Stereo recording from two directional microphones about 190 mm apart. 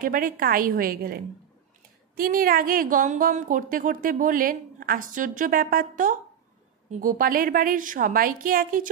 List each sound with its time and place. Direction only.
0.0 s a woman's voice: 45° right (ahead or behind)